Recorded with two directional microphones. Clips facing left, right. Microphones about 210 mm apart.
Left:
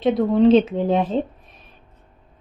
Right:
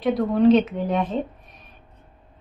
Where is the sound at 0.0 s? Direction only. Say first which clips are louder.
Left 2 dB; 30° left (ahead or behind).